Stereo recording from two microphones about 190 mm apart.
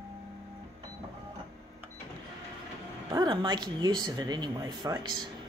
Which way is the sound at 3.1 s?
20° right (ahead or behind).